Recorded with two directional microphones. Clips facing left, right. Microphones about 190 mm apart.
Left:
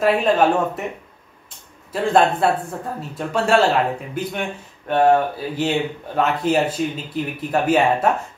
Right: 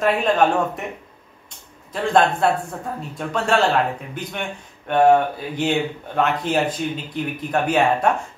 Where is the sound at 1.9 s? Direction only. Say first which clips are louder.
Left 1 dB; 5° left (ahead or behind).